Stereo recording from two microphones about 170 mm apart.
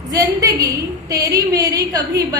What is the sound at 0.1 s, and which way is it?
A woman's voice, 20° right (ahead or behind).